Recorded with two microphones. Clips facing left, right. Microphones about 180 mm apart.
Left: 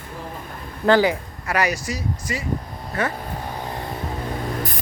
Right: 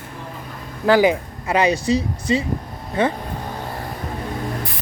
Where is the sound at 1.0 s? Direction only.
20° right (ahead or behind).